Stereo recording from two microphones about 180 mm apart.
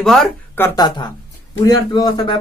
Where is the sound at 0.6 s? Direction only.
20° left (ahead or behind).